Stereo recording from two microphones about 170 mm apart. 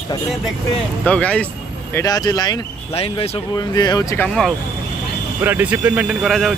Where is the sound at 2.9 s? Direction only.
35° left (ahead or behind).